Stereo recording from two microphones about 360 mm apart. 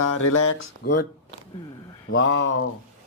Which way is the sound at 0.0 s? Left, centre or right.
Left.